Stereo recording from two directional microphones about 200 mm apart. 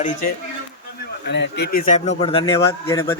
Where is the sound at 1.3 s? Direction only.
60° left (ahead or behind); by 3.0 s 25° left (ahead or behind).